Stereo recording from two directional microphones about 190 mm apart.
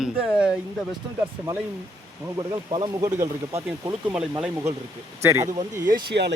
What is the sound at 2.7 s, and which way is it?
Speech, 25° right (ahead or behind).